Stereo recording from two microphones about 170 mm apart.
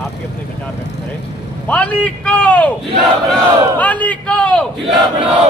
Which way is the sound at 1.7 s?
10° left (ahead or behind).